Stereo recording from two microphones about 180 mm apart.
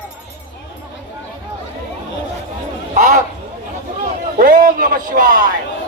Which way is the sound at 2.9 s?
40° right (ahead or behind).